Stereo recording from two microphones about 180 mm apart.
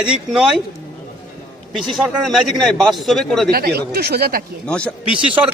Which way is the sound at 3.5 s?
60° right (ahead or behind).